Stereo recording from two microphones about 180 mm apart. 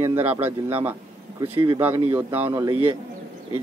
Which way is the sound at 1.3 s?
25° right (ahead or behind).